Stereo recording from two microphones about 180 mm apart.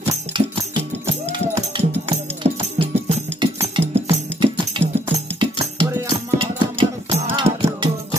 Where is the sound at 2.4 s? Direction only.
40° right (ahead or behind).